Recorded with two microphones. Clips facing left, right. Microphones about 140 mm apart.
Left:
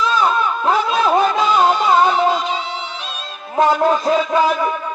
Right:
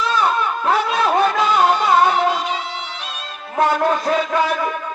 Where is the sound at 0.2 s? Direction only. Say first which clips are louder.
Left 2 dB; 30° left (ahead or behind).